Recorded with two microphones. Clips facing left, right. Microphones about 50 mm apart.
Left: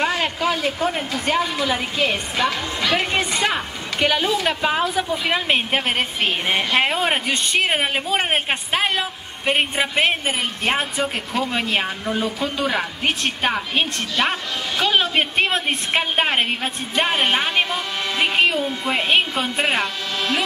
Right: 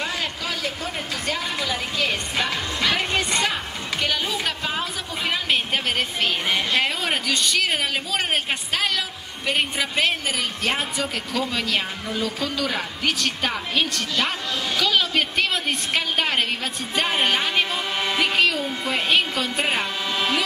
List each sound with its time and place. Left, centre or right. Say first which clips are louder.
0.2 s a man's voice: left 6 dB; left
2.3 s speech: left 3 dB; centre
4.0 s a woman's voice: left 6 dB; centre